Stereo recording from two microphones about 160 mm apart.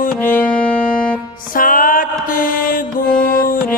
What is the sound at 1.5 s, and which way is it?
Music, 60° left (ahead or behind).